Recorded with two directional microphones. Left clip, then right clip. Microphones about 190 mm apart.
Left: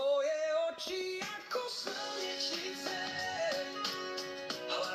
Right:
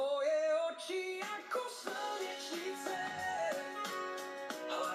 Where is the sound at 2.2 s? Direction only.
20° left (ahead or behind).